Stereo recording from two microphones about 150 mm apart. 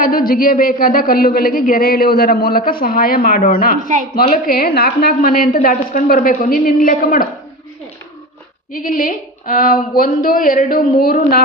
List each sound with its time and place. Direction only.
0.0 s speech: 75° left (ahead or behind)
8.7 s speech: 65° left (ahead or behind); by 11.4 s 85° left